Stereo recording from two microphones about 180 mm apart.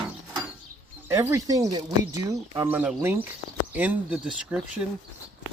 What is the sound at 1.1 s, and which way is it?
Speech, 15° right (ahead or behind).